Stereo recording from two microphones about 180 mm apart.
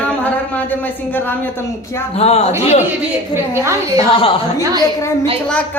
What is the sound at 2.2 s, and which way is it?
Speech, 35° left (ahead or behind).